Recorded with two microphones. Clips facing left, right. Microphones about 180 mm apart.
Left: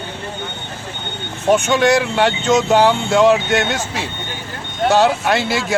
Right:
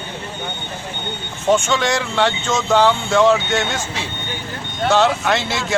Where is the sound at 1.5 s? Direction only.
15° left (ahead or behind).